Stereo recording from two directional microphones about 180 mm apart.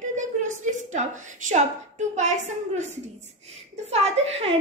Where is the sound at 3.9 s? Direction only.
35° right (ahead or behind).